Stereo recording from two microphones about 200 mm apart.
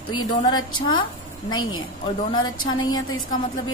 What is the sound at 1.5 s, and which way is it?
Speech, 90° left.